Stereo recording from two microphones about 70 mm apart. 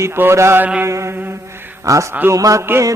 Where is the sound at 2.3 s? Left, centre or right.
Right.